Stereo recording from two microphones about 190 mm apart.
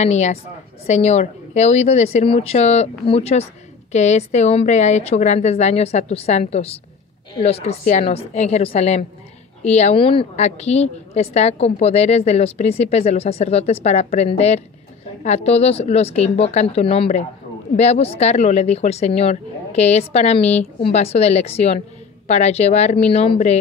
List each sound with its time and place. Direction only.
0.0 s a woman's voice: 35° left (ahead or behind)